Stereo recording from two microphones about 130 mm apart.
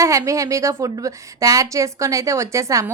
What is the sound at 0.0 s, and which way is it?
A woman's voice, 25° right (ahead or behind).